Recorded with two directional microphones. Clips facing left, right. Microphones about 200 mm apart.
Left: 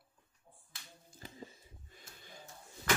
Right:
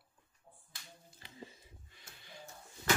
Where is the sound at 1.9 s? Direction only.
45° left (ahead or behind).